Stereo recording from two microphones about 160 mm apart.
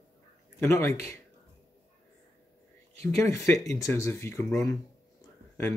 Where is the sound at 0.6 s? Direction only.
15° left (ahead or behind).